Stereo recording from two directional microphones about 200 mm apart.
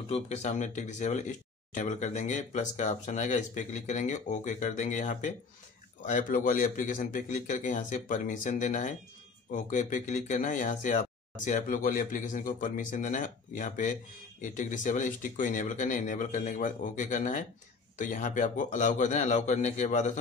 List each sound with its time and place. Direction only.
0.1 s speech: 35° left (ahead or behind)